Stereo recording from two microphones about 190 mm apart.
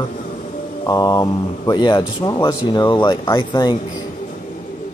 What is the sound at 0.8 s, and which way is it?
Speech, 20° left (ahead or behind).